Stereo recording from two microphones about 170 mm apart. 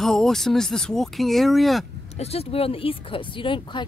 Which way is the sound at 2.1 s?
35° left (ahead or behind).